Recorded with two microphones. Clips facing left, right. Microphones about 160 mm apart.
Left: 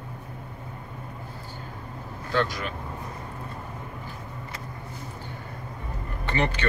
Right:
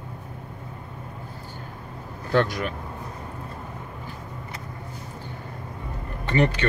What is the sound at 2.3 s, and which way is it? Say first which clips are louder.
Speech: right 4 dB; 45° right (ahead or behind).